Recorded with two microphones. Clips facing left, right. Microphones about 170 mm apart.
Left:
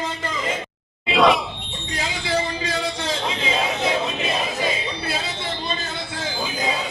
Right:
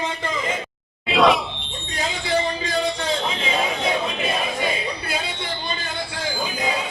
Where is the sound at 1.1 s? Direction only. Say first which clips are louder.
Even; centre (ahead or behind).